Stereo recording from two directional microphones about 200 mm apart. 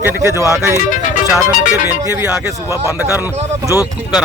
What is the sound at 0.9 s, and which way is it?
Music, 40° left (ahead or behind).